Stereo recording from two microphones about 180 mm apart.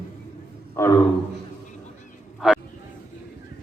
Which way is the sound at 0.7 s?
15° left (ahead or behind).